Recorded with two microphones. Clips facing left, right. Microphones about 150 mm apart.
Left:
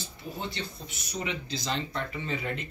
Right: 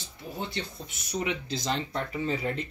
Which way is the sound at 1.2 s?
50° right (ahead or behind).